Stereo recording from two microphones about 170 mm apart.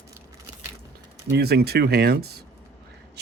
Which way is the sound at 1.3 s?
75° right (ahead or behind).